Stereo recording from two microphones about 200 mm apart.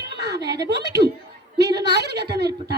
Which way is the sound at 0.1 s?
55° right (ahead or behind).